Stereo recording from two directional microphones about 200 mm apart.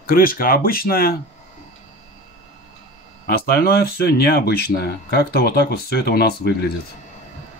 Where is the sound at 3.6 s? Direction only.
50° left (ahead or behind).